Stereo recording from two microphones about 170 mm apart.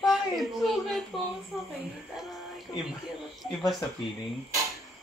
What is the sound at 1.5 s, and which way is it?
Speech, 5° right (ahead or behind).